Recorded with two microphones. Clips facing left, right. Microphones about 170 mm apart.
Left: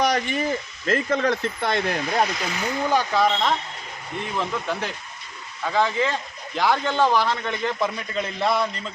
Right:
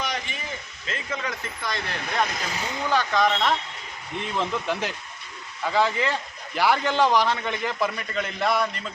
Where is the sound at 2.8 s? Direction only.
15° left (ahead or behind).